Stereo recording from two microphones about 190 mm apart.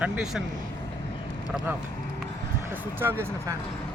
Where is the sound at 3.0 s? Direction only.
15° right (ahead or behind).